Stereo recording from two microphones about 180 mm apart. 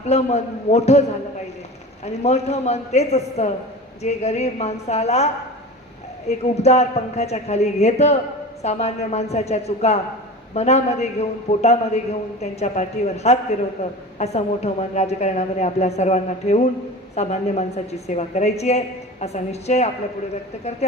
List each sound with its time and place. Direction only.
0.0 s a woman's voice: 40° left (ahead or behind)
2.0 s a woman's voice: 35° left (ahead or behind)